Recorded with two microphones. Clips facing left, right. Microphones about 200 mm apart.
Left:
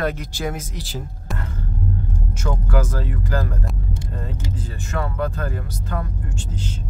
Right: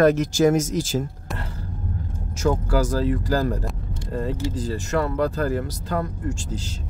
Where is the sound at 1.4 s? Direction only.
35° right (ahead or behind).